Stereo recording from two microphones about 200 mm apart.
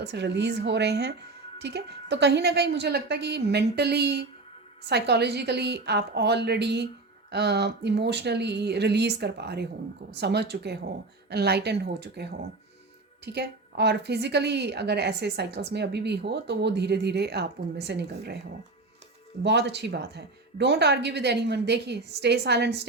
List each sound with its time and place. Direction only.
0.0 s a woman's voice: 55° right (ahead or behind)
19.4 s a woman's voice: 55° right (ahead or behind)